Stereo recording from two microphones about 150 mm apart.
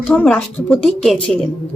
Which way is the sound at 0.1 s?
10° left (ahead or behind).